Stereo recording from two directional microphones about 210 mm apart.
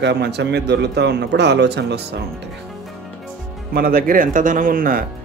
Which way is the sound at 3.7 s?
45° right (ahead or behind).